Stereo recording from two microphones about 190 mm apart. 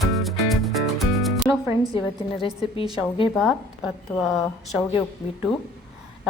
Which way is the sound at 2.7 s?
25° left (ahead or behind).